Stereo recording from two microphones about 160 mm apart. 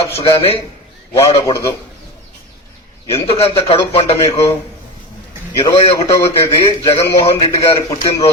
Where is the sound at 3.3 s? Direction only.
35° left (ahead or behind).